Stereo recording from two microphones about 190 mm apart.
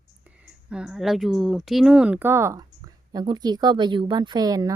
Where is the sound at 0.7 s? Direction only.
5° right (ahead or behind).